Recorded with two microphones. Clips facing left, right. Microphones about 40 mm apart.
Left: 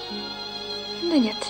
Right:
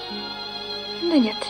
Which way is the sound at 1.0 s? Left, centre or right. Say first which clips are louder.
Right 2 dB; centre.